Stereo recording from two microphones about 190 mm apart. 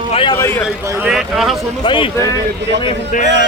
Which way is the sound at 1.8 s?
25° left (ahead or behind).